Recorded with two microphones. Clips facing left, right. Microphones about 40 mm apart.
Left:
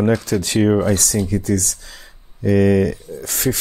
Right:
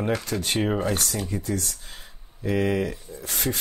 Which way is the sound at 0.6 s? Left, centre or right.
Left.